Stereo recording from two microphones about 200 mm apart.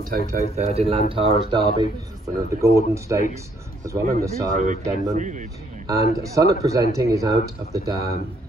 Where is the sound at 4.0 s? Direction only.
45° right (ahead or behind).